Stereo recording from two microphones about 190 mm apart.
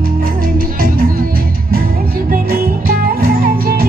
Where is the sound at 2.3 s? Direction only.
50° right (ahead or behind).